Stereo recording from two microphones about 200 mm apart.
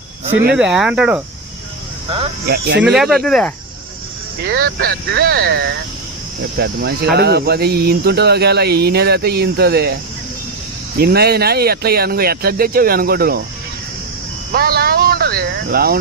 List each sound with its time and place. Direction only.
0.5 s speech: 5° right (ahead or behind)
2.0 s speech: 30° right (ahead or behind)
2.5 s speech: 55° right (ahead or behind)
2.8 s speech: centre (ahead or behind)
4.4 s speech: 50° right (ahead or behind)
11.0 s speech: 50° right (ahead or behind)
14.5 s speech: 50° right (ahead or behind)